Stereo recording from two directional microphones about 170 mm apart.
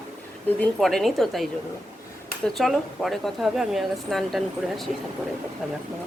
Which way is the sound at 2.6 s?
Centre (ahead or behind).